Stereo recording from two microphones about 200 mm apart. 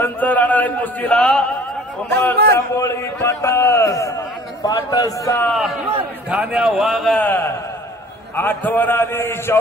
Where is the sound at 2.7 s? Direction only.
15° left (ahead or behind).